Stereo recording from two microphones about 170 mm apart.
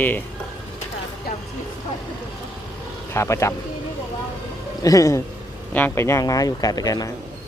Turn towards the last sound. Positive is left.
turn(degrees=20)  # may be behind; listen again after turning